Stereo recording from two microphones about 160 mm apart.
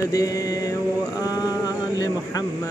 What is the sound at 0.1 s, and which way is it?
Mantra, 20° left (ahead or behind).